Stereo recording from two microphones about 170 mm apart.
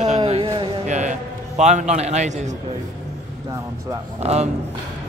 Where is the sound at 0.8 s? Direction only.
45° right (ahead or behind).